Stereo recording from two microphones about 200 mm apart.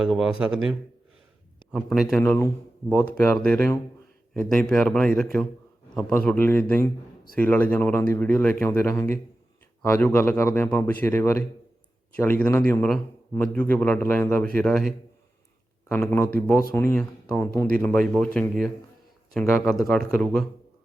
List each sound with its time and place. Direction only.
0.0 s speech: 5° right (ahead or behind)
2.2 s a man's voice: 10° left (ahead or behind)
16.0 s a man's voice: 10° left (ahead or behind)